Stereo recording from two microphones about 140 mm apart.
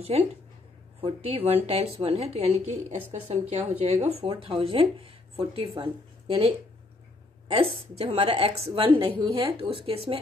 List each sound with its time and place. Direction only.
1.0 s a woman's voice: 45° right (ahead or behind)